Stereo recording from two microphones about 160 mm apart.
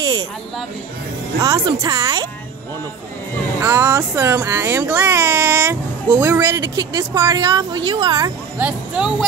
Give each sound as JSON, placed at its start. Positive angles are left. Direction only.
{"t": 0.0, "sound": "a sound", "side_deg": -25}
{"t": 1.4, "sound": "speech", "side_deg": -20}
{"t": 3.6, "sound": "speech", "side_deg": -15}
{"t": 8.5, "sound": "speech", "side_deg": -5}